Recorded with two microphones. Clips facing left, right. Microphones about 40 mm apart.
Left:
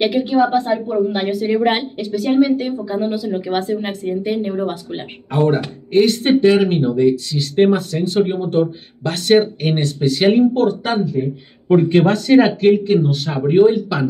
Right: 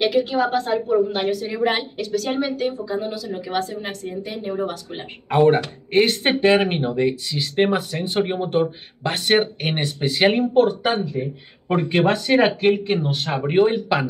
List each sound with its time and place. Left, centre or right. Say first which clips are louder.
0.0 s a woman's voice: left 4 dB; centre
1.5 s speech: left 5 dB; left
5.3 s speech: right 1 dB; right